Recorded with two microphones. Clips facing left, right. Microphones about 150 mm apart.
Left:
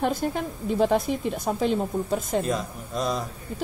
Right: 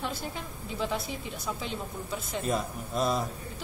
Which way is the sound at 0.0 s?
50° left (ahead or behind).